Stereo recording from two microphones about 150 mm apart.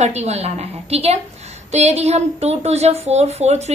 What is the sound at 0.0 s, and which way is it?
A woman's voice, 45° right (ahead or behind).